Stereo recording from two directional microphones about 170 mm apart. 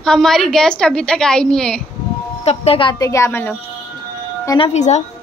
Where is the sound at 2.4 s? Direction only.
35° left (ahead or behind); by 3.5 s 10° left (ahead or behind).